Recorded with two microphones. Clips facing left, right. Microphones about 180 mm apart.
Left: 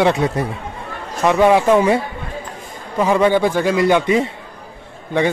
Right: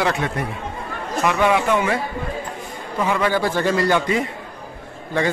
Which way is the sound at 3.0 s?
25° left (ahead or behind).